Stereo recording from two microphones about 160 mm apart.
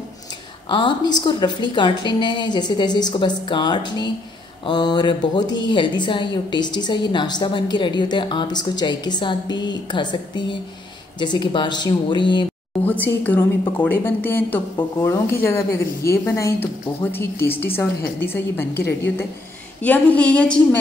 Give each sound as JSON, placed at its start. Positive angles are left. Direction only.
{"t": 0.7, "sound": "a woman's voice", "side_deg": 30}
{"t": 12.8, "sound": "a woman's voice", "side_deg": 10}
{"t": 19.8, "sound": "a woman's voice", "side_deg": 10}